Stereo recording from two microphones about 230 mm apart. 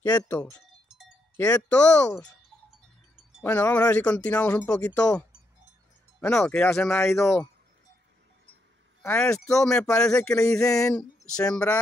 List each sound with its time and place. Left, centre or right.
0.0 s speech: centre
0.4 s a sound: centre
1.3 s speech: centre
3.3 s speech: centre
9.0 s speech: centre
10.7 s speech: centre
11.3 s speech: centre